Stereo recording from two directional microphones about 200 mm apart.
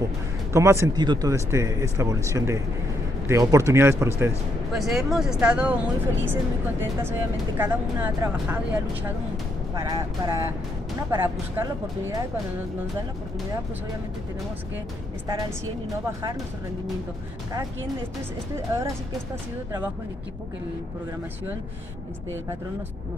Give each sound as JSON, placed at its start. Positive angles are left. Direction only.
{"t": 0.5, "sound": "speech", "side_deg": -15}
{"t": 4.7, "sound": "speech", "side_deg": 0}
{"t": 6.8, "sound": "speech", "side_deg": -10}
{"t": 15.9, "sound": "speech", "side_deg": -15}
{"t": 18.7, "sound": "speech", "side_deg": -10}